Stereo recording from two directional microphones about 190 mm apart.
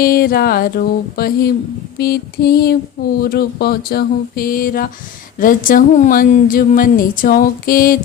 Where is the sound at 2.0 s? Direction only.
55° left (ahead or behind).